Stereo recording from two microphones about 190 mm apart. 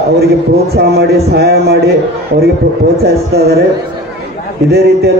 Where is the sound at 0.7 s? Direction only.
55° right (ahead or behind).